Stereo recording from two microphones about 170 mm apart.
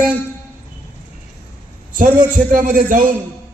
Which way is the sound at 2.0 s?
50° right (ahead or behind).